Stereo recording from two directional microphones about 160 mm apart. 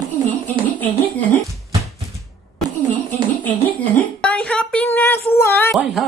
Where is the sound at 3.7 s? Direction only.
10° left (ahead or behind).